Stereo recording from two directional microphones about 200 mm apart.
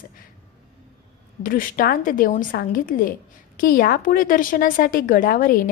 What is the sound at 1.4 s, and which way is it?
A woman's voice, 45° left (ahead or behind).